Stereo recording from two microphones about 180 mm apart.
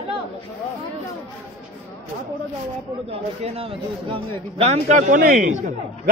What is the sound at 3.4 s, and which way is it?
A man's voice, 30° right (ahead or behind).